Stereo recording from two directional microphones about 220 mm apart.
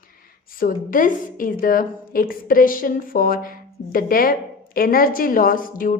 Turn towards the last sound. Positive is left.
turn(degrees=40)  # may be behind; listen again after turning